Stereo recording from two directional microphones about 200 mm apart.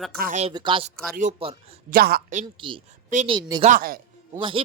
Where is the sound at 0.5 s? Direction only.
25° right (ahead or behind).